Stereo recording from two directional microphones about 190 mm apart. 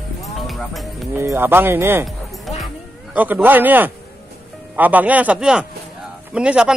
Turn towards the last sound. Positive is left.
turn(degrees=-5)  # may be behind; listen again after turning